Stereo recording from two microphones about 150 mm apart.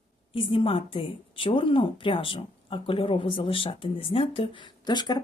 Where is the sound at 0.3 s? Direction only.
35° left (ahead or behind).